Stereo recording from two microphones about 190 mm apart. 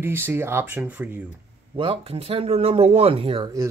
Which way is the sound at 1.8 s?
30° right (ahead or behind).